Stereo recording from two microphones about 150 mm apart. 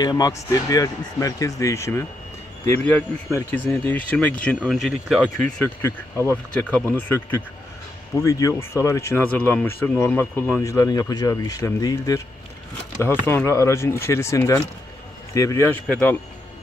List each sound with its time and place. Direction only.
0.0 s speech: 25° left (ahead or behind)